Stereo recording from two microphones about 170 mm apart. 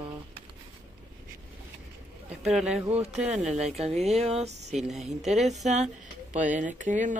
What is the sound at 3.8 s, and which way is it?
Speech, 40° right (ahead or behind).